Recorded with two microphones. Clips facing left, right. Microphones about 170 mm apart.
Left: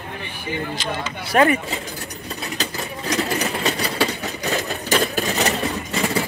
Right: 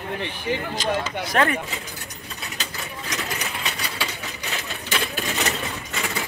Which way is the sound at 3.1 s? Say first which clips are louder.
Left 9 dB; 35° left (ahead or behind).